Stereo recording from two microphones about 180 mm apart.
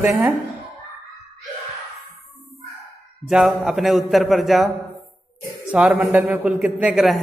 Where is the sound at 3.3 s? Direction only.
Centre (ahead or behind).